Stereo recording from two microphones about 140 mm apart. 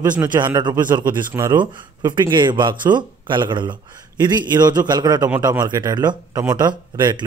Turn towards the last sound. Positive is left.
turn(degrees=-30)  # may be behind; listen again after turning